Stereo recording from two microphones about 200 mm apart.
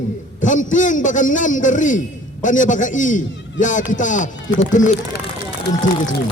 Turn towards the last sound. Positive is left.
turn(degrees=40)  # may be behind; listen again after turning